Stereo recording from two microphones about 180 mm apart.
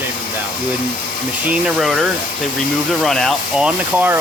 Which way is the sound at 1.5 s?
5° right (ahead or behind).